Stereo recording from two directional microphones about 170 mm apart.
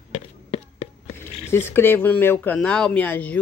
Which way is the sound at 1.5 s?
15° left (ahead or behind).